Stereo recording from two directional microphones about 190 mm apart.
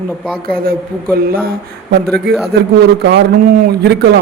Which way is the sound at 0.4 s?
50° right (ahead or behind).